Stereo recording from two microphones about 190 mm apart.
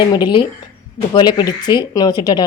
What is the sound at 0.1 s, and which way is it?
Speech, 25° left (ahead or behind).